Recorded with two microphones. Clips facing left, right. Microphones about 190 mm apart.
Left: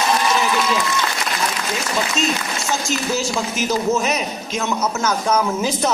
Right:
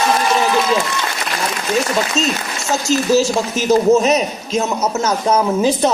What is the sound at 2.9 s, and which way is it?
A man's voice, 35° right (ahead or behind).